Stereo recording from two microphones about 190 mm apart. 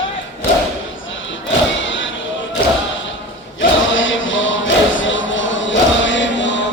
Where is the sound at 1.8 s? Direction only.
80° left.